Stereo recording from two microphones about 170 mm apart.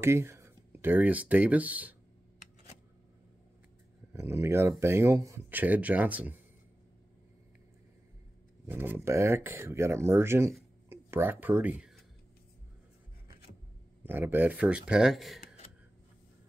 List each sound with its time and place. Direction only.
0.0 s speech: 15° right (ahead or behind)
4.1 s speech: 15° right (ahead or behind)
8.6 s speech: 10° right (ahead or behind)
14.0 s speech: 10° right (ahead or behind)
15.4 s a sound: 35° left (ahead or behind)